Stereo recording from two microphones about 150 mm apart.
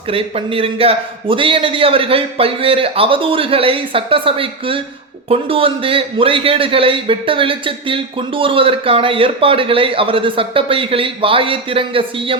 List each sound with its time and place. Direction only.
0.1 s a man's voice: 40° right (ahead or behind)